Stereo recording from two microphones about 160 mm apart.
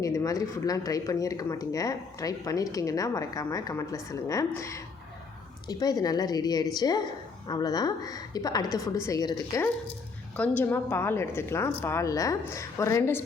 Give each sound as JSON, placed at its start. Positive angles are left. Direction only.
{"t": 0.0, "sound": "speech", "side_deg": 20}
{"t": 10.3, "sound": "a woman's voice", "side_deg": 10}